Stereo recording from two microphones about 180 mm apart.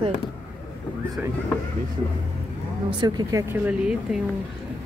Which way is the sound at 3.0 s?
20° right (ahead or behind).